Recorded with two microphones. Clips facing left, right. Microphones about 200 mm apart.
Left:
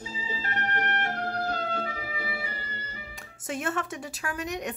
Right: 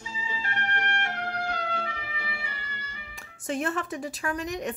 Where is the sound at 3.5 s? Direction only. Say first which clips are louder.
Right 2 dB; centre (ahead or behind).